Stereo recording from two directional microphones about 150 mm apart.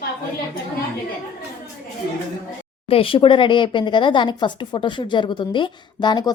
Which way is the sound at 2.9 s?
40° left (ahead or behind).